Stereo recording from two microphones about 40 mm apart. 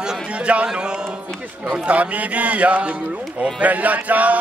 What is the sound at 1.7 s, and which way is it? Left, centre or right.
Chant, right.